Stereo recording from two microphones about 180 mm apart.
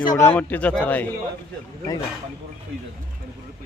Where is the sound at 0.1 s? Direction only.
15° left (ahead or behind).